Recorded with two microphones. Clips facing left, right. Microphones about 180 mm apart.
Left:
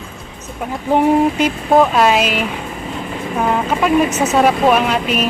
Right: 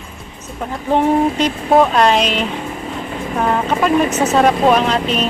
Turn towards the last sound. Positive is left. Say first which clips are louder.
# even
turn(degrees=10)  # may be behind; listen again after turning